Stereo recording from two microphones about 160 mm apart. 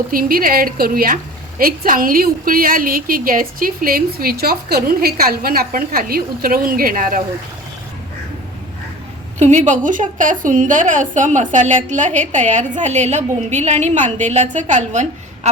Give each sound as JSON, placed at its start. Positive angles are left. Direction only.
{"t": 0.1, "sound": "a woman's voice", "side_deg": -65}
{"t": 9.4, "sound": "a woman's voice", "side_deg": -45}